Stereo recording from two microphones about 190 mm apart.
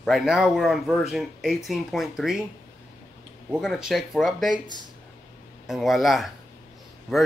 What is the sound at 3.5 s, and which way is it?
Speech, 5° right (ahead or behind).